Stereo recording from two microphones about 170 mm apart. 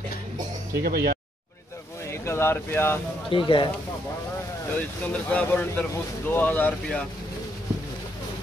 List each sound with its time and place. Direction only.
0.8 s speech: 65° right (ahead or behind)
2.2 s speech: 15° left (ahead or behind)
3.3 s speech: 30° left (ahead or behind)
4.7 s speech: 10° left (ahead or behind)